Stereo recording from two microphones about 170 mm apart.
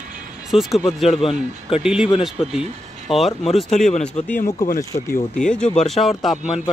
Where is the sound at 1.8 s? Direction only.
5° right (ahead or behind).